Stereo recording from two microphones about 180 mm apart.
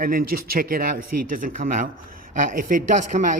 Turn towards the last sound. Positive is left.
turn(degrees=-45)  # may be behind; listen again after turning